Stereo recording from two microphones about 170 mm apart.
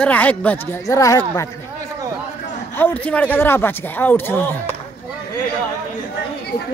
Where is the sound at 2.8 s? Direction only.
10° left (ahead or behind).